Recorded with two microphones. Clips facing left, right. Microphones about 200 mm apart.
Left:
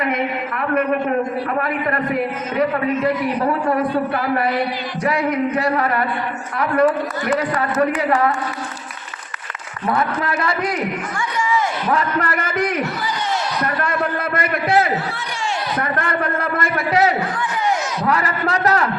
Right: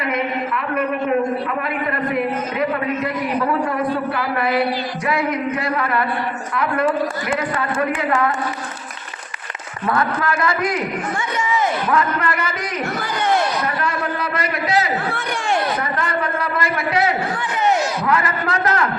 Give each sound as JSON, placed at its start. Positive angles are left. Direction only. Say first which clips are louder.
{"t": 2.6, "sound": "music", "louder": "left 5 dB", "side_deg": 40}
{"t": 5.0, "sound": "music", "louder": "left 3 dB", "side_deg": 40}
{"t": 10.2, "sound": "music", "louder": "right 1 dB", "side_deg": 30}
{"t": 11.9, "sound": "a man's voice", "louder": "even", "side_deg": 40}
{"t": 13.8, "sound": "a man's voice", "louder": "left 1 dB", "side_deg": 55}
{"t": 15.1, "sound": "speech", "louder": "right 3 dB", "side_deg": -55}
{"t": 15.8, "sound": "a man's voice", "louder": "left 1 dB", "side_deg": 55}
{"t": 18.1, "sound": "music", "louder": "left 2 dB", "side_deg": 35}